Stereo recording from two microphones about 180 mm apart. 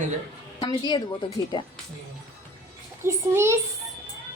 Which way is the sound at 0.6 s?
25° left (ahead or behind).